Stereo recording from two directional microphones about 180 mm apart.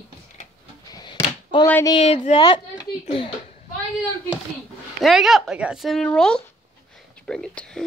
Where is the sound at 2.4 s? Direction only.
20° left (ahead or behind).